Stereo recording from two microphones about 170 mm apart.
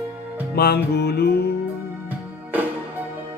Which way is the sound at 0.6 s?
70° left (ahead or behind).